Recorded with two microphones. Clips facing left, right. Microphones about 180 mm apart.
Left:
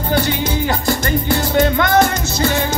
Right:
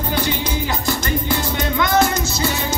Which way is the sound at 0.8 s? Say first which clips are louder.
Left 2 dB; 50° left (ahead or behind).